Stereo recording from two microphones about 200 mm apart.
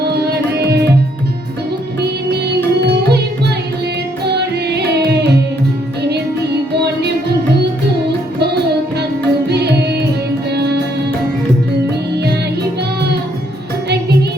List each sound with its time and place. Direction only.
2.8 s music: 55° right (ahead or behind)
4.3 s music: 55° right (ahead or behind)
9.5 s music: 55° right (ahead or behind)